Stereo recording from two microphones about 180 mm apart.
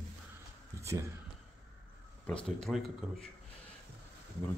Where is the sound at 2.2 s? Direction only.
5° left (ahead or behind).